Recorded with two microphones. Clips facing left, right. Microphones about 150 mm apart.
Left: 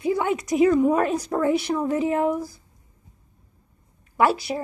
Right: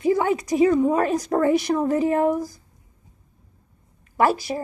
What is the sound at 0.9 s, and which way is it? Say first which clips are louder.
A woman's voice: right 2 dB; 40° right (ahead or behind).